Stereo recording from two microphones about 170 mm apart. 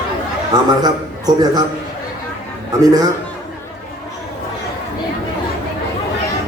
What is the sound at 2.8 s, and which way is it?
Speech, 20° right (ahead or behind).